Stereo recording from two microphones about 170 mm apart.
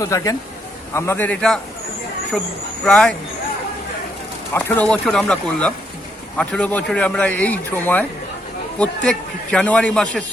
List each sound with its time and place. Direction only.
0.0 s speech: 20° left (ahead or behind)
2.8 s speech: 5° left (ahead or behind)
4.5 s speech: 10° left (ahead or behind)